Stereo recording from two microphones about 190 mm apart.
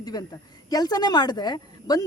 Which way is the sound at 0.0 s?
20° left (ahead or behind).